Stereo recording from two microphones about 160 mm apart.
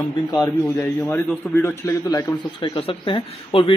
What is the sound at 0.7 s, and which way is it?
A man's voice, 15° left (ahead or behind).